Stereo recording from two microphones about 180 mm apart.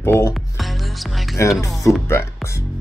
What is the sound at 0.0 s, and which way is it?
Speech, 15° left (ahead or behind).